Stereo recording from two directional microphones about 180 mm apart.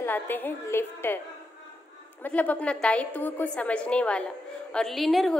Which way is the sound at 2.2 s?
10° left (ahead or behind).